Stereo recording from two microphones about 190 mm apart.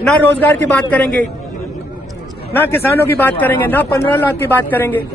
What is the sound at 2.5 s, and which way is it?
Speech, 10° left (ahead or behind).